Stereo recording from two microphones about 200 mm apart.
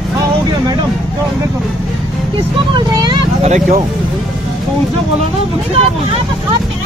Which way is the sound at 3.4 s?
35° right (ahead or behind).